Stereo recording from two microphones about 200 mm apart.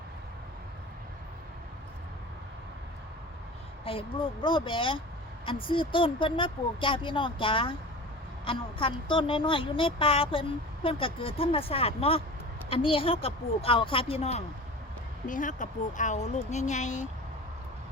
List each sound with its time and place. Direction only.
3.8 s a woman's voice: 25° left (ahead or behind)